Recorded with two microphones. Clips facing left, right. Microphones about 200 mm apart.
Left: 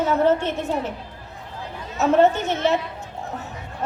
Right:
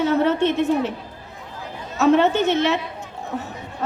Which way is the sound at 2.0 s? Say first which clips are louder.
Right 1 dB; 65° right (ahead or behind).